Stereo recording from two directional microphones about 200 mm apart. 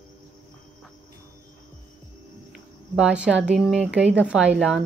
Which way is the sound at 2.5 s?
5° right (ahead or behind).